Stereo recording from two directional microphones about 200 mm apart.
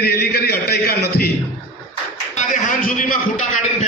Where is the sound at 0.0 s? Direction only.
50° left (ahead or behind).